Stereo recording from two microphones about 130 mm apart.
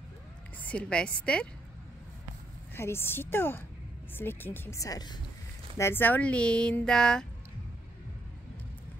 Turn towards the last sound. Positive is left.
turn(degrees=5)  # may be behind; listen again after turning